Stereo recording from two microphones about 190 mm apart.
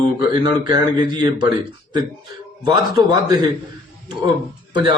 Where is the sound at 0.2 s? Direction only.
25° right (ahead or behind).